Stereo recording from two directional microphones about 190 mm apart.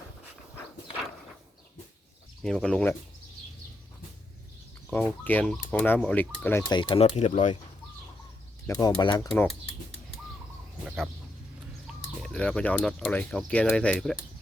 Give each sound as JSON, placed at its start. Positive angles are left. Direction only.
{"t": 2.4, "sound": "speech", "side_deg": 0}
{"t": 4.9, "sound": "speech", "side_deg": 5}
{"t": 6.7, "sound": "speech", "side_deg": 25}
{"t": 8.6, "sound": "speech", "side_deg": 20}
{"t": 10.8, "sound": "speech", "side_deg": 0}